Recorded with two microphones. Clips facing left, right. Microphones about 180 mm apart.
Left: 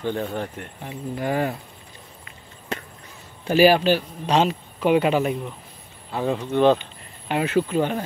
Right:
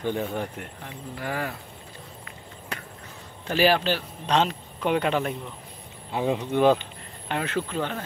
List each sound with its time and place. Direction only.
0.0 s speech: 15° right (ahead or behind)
0.8 s speech: 20° left (ahead or behind)
2.7 s chop: 25° left (ahead or behind)
3.4 s speech: 10° left (ahead or behind)
6.1 s speech: 15° right (ahead or behind)
7.2 s speech: 10° left (ahead or behind)